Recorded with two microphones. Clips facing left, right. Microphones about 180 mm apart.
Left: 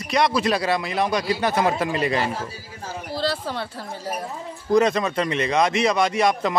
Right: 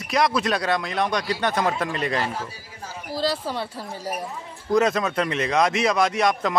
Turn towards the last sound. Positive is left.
turn(degrees=0)  # may be behind; listen again after turning